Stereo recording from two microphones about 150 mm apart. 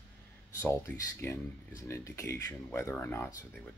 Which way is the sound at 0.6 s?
20° left (ahead or behind).